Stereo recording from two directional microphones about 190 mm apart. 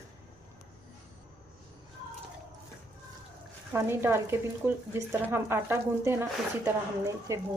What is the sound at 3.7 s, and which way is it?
Speech, 15° right (ahead or behind).